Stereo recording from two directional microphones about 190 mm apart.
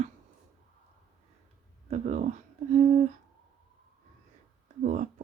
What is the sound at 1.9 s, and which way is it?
Speech, 40° right (ahead or behind).